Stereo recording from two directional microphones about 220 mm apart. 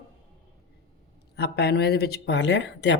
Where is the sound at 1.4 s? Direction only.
45° left (ahead or behind).